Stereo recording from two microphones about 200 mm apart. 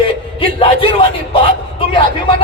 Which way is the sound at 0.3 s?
25° left (ahead or behind).